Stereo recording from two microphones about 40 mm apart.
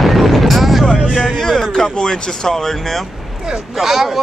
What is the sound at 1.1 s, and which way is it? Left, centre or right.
Music, centre.